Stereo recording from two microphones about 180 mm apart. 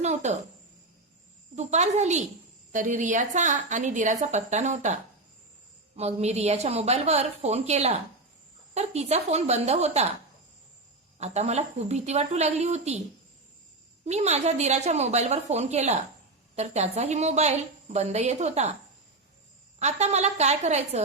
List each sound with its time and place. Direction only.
0.0 s a woman's voice: 40° right (ahead or behind)
1.5 s a woman's voice: 40° right (ahead or behind)
6.0 s a woman's voice: 35° right (ahead or behind)
11.2 s a woman's voice: 40° right (ahead or behind)
14.0 s a woman's voice: 40° right (ahead or behind)
19.8 s a woman's voice: 40° right (ahead or behind)